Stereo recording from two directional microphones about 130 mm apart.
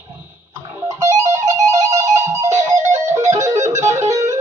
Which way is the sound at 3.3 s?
25° right (ahead or behind).